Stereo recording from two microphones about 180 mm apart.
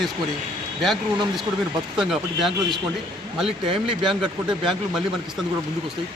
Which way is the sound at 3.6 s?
30° right (ahead or behind).